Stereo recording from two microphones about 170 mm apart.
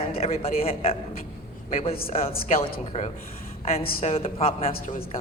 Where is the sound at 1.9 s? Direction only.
60° left (ahead or behind).